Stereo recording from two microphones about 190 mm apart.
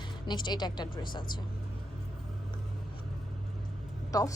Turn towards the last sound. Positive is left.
turn(degrees=20)  # may be behind; listen again after turning